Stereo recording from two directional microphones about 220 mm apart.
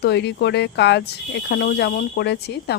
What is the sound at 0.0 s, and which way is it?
Speech, 50° left (ahead or behind).